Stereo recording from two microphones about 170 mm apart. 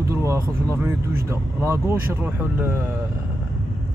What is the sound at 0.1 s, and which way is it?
Vehicle, 15° right (ahead or behind).